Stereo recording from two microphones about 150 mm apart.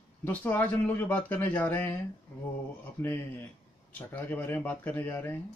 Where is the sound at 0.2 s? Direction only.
10° left (ahead or behind).